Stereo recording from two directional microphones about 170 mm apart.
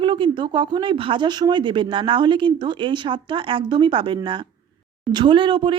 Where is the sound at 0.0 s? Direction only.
30° right (ahead or behind).